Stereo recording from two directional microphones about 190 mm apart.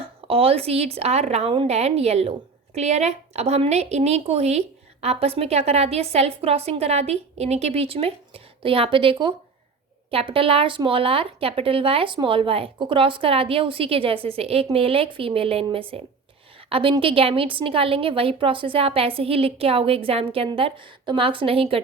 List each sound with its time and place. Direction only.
0.0 s a woman's voice: 30° right (ahead or behind)